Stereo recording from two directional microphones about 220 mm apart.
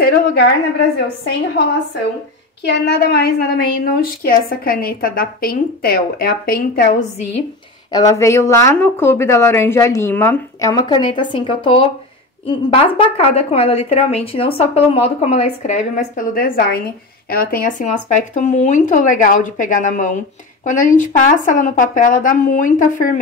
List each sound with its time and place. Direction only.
0.0 s a sound: 50° left (ahead or behind)
2.9 s a woman's voice: 45° left (ahead or behind)
7.9 s a woman's voice: 15° left (ahead or behind); by 23.1 s 35° left (ahead or behind)